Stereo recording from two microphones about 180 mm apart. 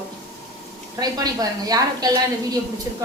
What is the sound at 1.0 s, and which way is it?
A woman's voice, 20° right (ahead or behind).